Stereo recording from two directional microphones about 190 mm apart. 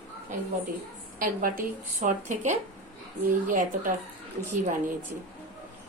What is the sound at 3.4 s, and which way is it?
Speech, 45° right (ahead or behind).